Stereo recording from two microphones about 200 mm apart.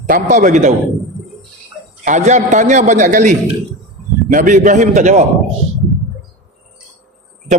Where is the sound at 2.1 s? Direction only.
35° right (ahead or behind).